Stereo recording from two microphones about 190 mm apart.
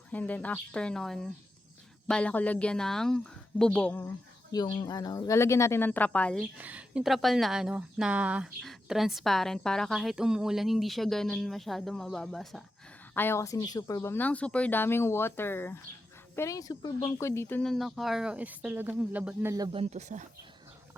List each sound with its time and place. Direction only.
0.1 s speech: 10° left (ahead or behind)
4.5 s speech: 20° left (ahead or behind)
6.6 s speech: 5° right (ahead or behind)
13.1 s speech: 10° left (ahead or behind); by 20.2 s 35° right (ahead or behind)